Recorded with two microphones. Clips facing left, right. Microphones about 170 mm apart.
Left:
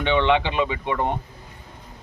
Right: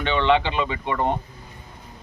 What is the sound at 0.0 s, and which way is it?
A man's voice, 15° left (ahead or behind).